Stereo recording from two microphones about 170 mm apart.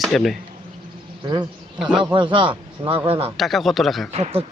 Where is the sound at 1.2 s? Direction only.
25° right (ahead or behind).